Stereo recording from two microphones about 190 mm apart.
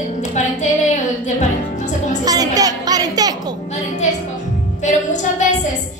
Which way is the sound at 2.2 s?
20° right (ahead or behind).